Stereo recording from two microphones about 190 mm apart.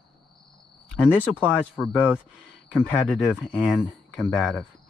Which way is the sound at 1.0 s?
5° right (ahead or behind).